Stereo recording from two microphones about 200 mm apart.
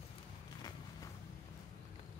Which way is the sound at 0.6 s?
20° left (ahead or behind).